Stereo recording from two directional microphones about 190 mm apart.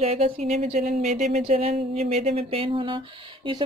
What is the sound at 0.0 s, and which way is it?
Speech, 35° right (ahead or behind).